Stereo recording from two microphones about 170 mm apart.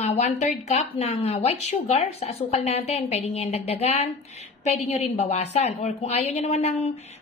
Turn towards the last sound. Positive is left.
turn(degrees=40)  # may be behind; listen again after turning